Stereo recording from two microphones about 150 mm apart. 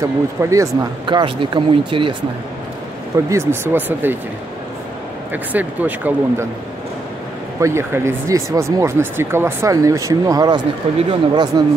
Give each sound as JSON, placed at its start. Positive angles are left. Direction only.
{"t": 0.0, "sound": "speech", "side_deg": -20}
{"t": 1.0, "sound": "speech", "side_deg": -35}
{"t": 3.3, "sound": "speech", "side_deg": -15}
{"t": 5.3, "sound": "speech", "side_deg": -10}
{"t": 7.6, "sound": "speech", "side_deg": -15}